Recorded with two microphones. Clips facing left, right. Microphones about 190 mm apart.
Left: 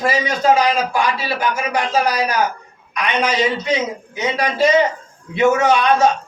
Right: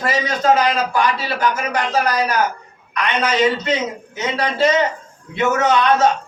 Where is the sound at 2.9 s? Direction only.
10° left (ahead or behind).